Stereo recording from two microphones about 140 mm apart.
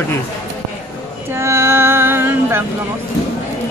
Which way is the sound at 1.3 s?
20° right (ahead or behind).